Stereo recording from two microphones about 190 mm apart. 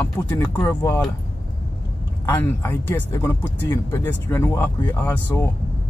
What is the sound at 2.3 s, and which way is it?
Speech, 10° left (ahead or behind).